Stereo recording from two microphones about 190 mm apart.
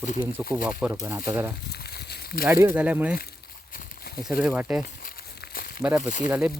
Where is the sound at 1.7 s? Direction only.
60° left (ahead or behind).